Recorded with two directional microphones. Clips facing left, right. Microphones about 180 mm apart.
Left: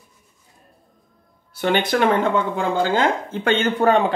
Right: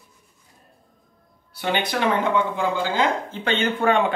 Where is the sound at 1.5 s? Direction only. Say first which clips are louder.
Left 5 dB; 50° left (ahead or behind).